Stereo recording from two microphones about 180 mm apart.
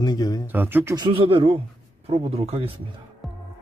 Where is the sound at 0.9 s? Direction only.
25° right (ahead or behind).